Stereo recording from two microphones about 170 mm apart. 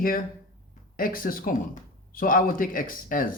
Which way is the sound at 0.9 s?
55° left (ahead or behind).